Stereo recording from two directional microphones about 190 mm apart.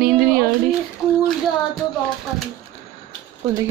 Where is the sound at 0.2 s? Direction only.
55° right (ahead or behind).